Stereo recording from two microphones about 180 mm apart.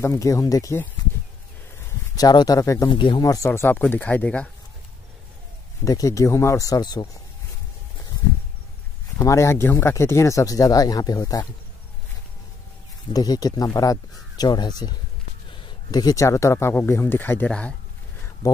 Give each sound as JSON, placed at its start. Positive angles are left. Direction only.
{"t": 0.0, "sound": "speech", "side_deg": 15}
{"t": 2.1, "sound": "speech", "side_deg": 20}
{"t": 5.9, "sound": "speech", "side_deg": 20}
{"t": 9.2, "sound": "speech", "side_deg": 15}
{"t": 13.1, "sound": "speech", "side_deg": 20}